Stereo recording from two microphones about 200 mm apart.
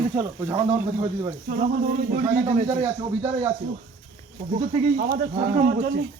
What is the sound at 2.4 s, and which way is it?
Speech, 30° right (ahead or behind).